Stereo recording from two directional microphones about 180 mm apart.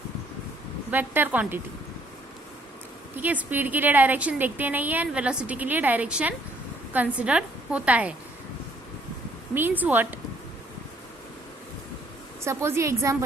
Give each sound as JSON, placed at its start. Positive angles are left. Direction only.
{"t": 0.9, "sound": "a woman's voice", "side_deg": -10}
{"t": 3.2, "sound": "a woman's voice", "side_deg": -10}
{"t": 9.6, "sound": "a woman's voice", "side_deg": -10}
{"t": 12.5, "sound": "a woman's voice", "side_deg": -15}